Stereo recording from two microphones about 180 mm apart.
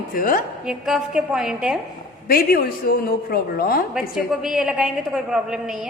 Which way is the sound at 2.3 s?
55° left (ahead or behind).